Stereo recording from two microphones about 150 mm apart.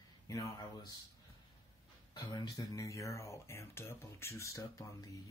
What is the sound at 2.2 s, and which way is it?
Speech, 30° left (ahead or behind).